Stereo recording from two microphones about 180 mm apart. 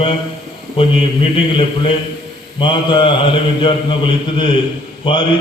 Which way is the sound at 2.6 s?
25° left (ahead or behind).